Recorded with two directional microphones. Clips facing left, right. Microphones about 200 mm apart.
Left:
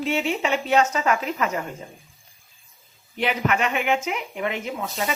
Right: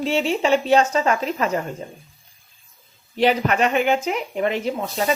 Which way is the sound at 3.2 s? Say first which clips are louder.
Right 5 dB; 35° right (ahead or behind).